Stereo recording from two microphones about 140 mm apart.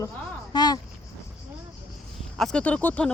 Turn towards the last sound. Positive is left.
turn(degrees=10)  # may be behind; listen again after turning